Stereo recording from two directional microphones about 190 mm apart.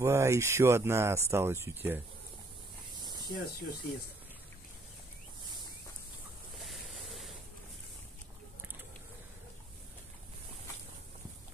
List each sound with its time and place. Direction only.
0.0 s speech: 15° right (ahead or behind)
3.0 s snake: 20° right (ahead or behind)
3.3 s speech: 55° left (ahead or behind)
6.6 s vehicle: centre (ahead or behind)